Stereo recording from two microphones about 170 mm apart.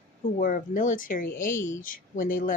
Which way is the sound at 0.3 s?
55° left (ahead or behind).